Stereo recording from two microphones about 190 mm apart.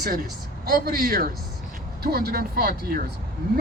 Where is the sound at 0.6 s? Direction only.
50° right (ahead or behind).